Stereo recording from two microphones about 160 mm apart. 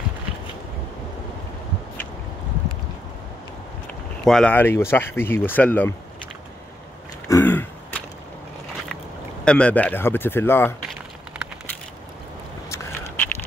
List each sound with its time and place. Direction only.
4.2 s speech: 5° left (ahead or behind)
7.2 s throat clearing: 15° left (ahead or behind)
9.4 s speech: 5° left (ahead or behind)
12.6 s a sound: 15° left (ahead or behind)